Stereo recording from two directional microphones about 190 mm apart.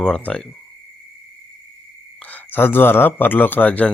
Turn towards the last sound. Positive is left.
turn(degrees=5)  # may be behind; listen again after turning